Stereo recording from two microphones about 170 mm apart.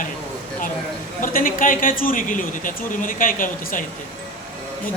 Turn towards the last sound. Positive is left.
turn(degrees=50)  # may be behind; listen again after turning